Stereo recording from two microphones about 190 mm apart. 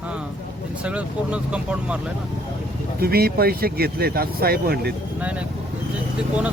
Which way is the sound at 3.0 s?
55° right (ahead or behind).